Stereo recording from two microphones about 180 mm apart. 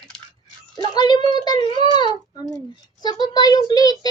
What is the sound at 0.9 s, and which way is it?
A child's voice, 25° left (ahead or behind).